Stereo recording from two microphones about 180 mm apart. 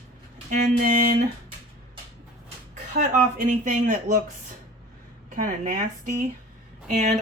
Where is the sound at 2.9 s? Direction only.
45° right (ahead or behind).